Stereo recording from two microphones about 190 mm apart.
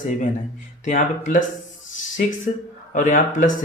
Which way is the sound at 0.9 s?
40° left (ahead or behind).